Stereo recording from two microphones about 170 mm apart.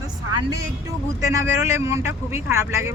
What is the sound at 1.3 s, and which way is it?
Speech, 15° right (ahead or behind).